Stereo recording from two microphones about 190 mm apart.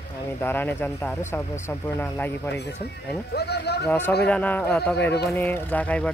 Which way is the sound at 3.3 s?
60° left (ahead or behind).